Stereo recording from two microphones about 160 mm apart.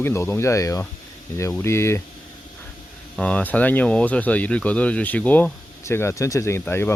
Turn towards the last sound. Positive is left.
turn(degrees=15)  # may be behind; listen again after turning